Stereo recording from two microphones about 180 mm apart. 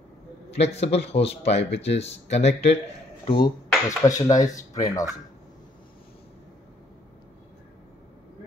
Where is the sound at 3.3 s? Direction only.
25° left (ahead or behind).